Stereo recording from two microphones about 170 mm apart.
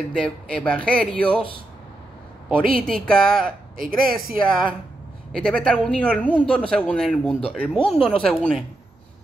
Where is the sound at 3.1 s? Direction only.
5° left (ahead or behind).